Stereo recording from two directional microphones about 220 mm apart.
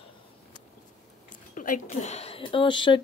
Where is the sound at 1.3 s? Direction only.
35° left (ahead or behind); by 3.0 s 20° left (ahead or behind).